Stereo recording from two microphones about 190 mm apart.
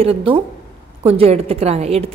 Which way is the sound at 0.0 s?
30° right (ahead or behind).